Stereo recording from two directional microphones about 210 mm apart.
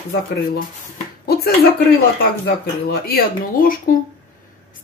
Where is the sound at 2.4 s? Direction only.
50° left (ahead or behind).